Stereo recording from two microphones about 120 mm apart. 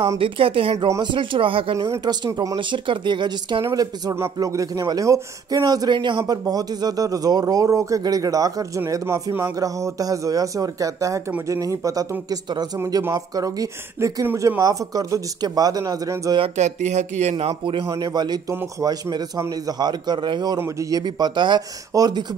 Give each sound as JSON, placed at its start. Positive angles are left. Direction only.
{"t": 0.2, "sound": "speech", "side_deg": -50}
{"t": 1.8, "sound": "a man's voice", "side_deg": -35}
{"t": 12.7, "sound": "speech", "side_deg": -25}
{"t": 16.5, "sound": "speech", "side_deg": -75}
{"t": 17.8, "sound": "a man's voice", "side_deg": -35}
{"t": 18.5, "sound": "a man's voice", "side_deg": -25}
{"t": 20.5, "sound": "speech", "side_deg": -25}
{"t": 21.0, "sound": "a man's voice", "side_deg": -40}